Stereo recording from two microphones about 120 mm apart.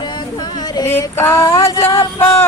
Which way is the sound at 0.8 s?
20° left (ahead or behind).